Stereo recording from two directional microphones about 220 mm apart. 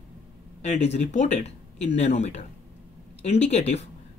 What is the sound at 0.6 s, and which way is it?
Speech, 30° left (ahead or behind).